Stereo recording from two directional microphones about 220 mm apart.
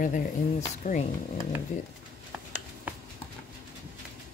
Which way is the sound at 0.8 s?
35° left (ahead or behind).